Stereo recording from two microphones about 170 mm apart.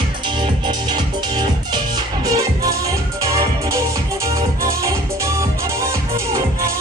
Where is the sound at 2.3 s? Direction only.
20° right (ahead or behind).